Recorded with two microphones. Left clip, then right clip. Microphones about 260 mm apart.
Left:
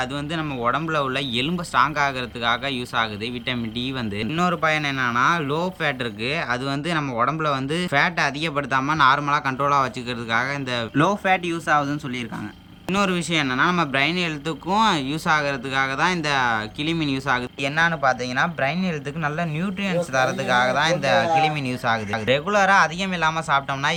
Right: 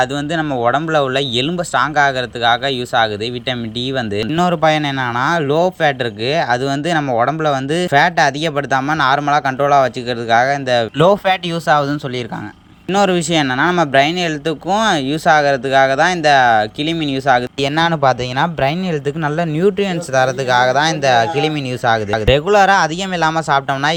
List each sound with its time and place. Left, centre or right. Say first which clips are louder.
0.0 s speech: right 9 dB; centre
10.9 s speech: right 5 dB; right
17.7 s speech: right 5 dB; right